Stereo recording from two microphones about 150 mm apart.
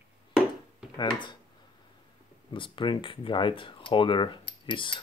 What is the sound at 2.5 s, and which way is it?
Speech, 35° left (ahead or behind).